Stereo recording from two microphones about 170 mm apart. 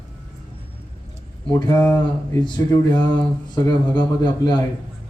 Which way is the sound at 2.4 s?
25° left (ahead or behind).